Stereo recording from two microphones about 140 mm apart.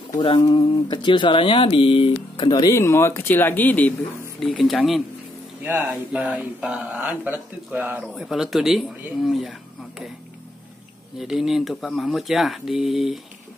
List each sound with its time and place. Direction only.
0.2 s speech: 35° left (ahead or behind)
2.7 s speech: 20° left (ahead or behind)
4.4 s speech: centre (ahead or behind)
11.1 s speech: 5° right (ahead or behind)